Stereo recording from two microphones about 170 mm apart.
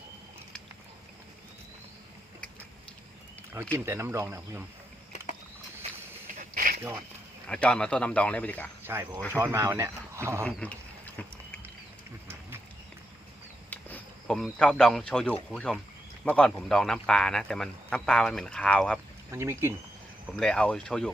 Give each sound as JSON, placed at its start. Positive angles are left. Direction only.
{"t": 3.5, "sound": "speech", "side_deg": -15}
{"t": 6.4, "sound": "a sound", "side_deg": -55}
{"t": 7.4, "sound": "speech", "side_deg": 5}
{"t": 8.9, "sound": "speech", "side_deg": -15}
{"t": 10.4, "sound": "a sound", "side_deg": 10}
{"t": 13.7, "sound": "a sound", "side_deg": 10}
{"t": 15.4, "sound": "speech", "side_deg": 5}
{"t": 19.3, "sound": "speech", "side_deg": -15}
{"t": 20.3, "sound": "speech", "side_deg": 5}